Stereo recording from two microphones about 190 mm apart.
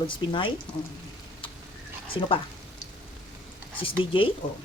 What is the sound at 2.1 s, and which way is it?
Speech, 25° left (ahead or behind).